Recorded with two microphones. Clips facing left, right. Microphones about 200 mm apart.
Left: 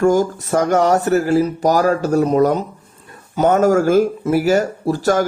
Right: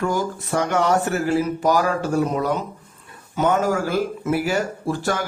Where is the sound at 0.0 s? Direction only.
45° left (ahead or behind).